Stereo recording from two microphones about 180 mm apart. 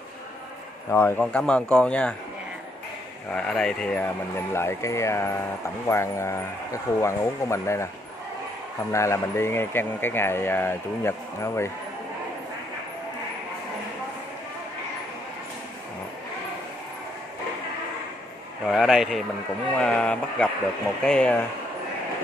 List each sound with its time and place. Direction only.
0.8 s speech: 15° left (ahead or behind)
3.3 s speech: 5° left (ahead or behind)
8.9 s speech: 15° left (ahead or behind)
18.7 s speech: centre (ahead or behind)